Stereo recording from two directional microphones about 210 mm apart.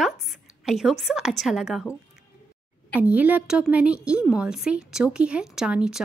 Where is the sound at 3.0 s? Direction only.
5° right (ahead or behind).